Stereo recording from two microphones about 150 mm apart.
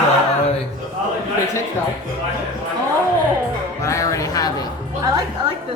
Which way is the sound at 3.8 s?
20° left (ahead or behind).